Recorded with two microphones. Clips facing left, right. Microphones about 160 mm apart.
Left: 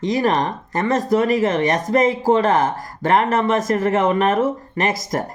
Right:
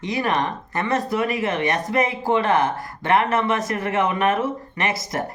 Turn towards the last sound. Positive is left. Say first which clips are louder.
# left 4 dB
turn(degrees=45)  # may be behind; listen again after turning